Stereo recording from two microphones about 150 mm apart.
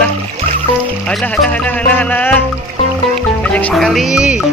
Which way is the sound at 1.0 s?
10° left (ahead or behind).